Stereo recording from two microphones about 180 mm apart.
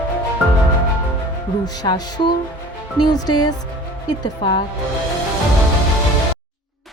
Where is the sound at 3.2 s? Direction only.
25° left (ahead or behind).